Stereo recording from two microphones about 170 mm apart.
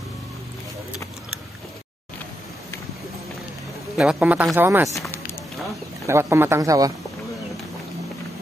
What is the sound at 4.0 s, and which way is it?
Speech, 5° right (ahead or behind).